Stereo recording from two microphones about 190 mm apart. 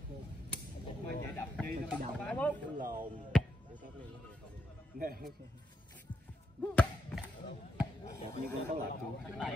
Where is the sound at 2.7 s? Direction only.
45° right (ahead or behind).